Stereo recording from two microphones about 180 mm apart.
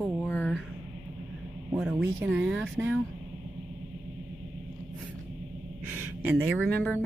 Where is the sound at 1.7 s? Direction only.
5° right (ahead or behind).